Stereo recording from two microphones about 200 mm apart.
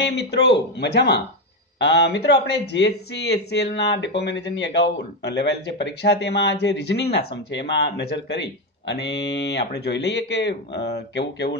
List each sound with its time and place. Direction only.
0.3 s speech: 60° left (ahead or behind)